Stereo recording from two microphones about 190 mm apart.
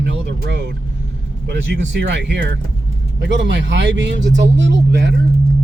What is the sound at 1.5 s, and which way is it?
Speech, 65° right (ahead or behind).